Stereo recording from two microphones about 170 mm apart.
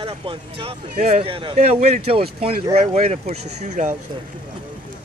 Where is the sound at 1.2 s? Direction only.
30° right (ahead or behind).